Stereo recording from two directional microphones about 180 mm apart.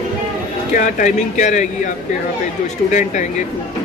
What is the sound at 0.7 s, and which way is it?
Speech, 45° left (ahead or behind).